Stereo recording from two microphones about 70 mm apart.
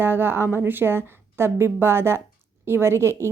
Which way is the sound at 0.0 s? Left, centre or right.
Right.